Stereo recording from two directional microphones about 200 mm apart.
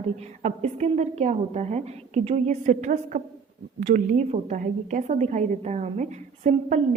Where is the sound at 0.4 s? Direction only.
35° right (ahead or behind).